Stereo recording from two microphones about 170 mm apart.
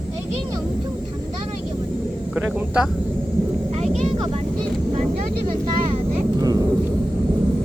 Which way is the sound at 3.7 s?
40° right (ahead or behind).